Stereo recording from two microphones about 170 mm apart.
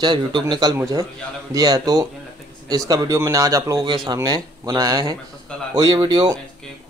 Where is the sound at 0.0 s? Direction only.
25° right (ahead or behind).